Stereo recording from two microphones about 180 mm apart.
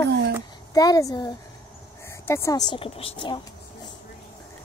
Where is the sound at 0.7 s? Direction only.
20° left (ahead or behind).